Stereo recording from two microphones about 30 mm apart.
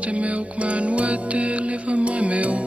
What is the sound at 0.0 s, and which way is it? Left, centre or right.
Music, right.